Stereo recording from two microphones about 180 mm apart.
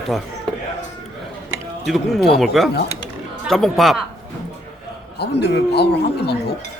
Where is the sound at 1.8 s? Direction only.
Centre (ahead or behind).